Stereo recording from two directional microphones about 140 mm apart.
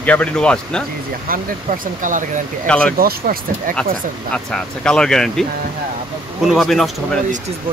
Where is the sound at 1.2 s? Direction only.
85° right; by 2.3 s 70° right (ahead or behind).